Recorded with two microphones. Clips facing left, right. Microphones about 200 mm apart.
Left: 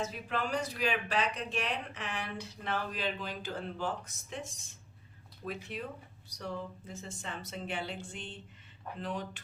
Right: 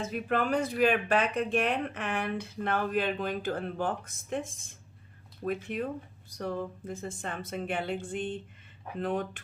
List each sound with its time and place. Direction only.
0.0 s speech: 55° right (ahead or behind)